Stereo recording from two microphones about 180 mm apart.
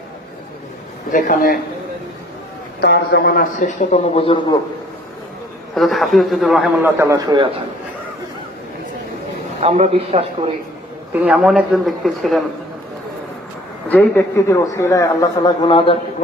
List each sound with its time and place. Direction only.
1.1 s a man's voice: 50° left (ahead or behind)
2.8 s a man's voice: 65° left (ahead or behind)
3.8 s speech: 35° left (ahead or behind)
5.7 s speech: centre (ahead or behind)
7.0 s a man's voice: 20° right (ahead or behind)
9.6 s a man's voice: 40° right (ahead or behind)
11.1 s speech: 5° right (ahead or behind)
13.8 s a man's voice: 10° left (ahead or behind); by 16.0 s 30° left (ahead or behind)